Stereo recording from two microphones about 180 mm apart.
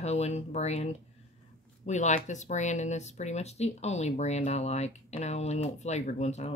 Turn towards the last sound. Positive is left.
turn(degrees=40)  # may be behind; listen again after turning